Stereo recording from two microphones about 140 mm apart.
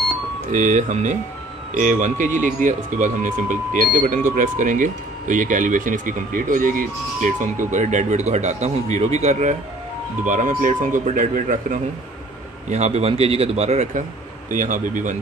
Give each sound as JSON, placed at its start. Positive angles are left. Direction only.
{"t": 0.5, "sound": "speech", "side_deg": -65}
{"t": 12.6, "sound": "a man's voice", "side_deg": -55}
{"t": 14.5, "sound": "speech", "side_deg": -65}